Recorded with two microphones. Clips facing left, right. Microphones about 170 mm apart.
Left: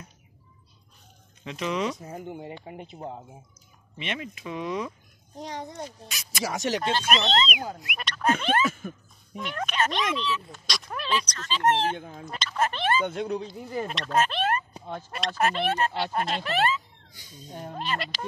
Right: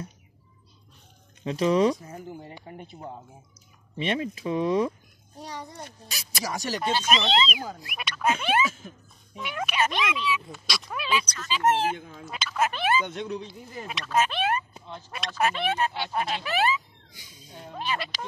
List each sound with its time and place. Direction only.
1.4 s speech: 35° right (ahead or behind)
2.0 s speech: 25° left (ahead or behind)
4.0 s speech: 35° right (ahead or behind)
5.4 s speech: 20° left (ahead or behind)
6.0 s speech: 35° right (ahead or behind)
6.4 s speech: 20° left (ahead or behind)
6.8 s speech: 5° right (ahead or behind)
8.6 s speech: 55° left (ahead or behind)
9.4 s speech: 5° right (ahead or behind)
13.0 s speech: 35° left (ahead or behind)
13.8 s speech: 5° right (ahead or behind)
16.4 s a sound: 5° right (ahead or behind)
17.4 s speech: 40° left (ahead or behind)
17.7 s speech: centre (ahead or behind)